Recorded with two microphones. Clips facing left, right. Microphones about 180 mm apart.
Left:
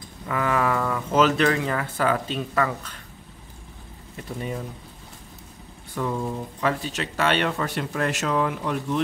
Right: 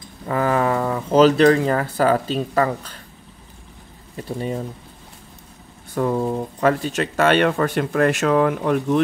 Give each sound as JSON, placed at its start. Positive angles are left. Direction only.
{"t": 0.3, "sound": "speech", "side_deg": -35}
{"t": 4.2, "sound": "speech", "side_deg": -30}
{"t": 5.9, "sound": "speech", "side_deg": -45}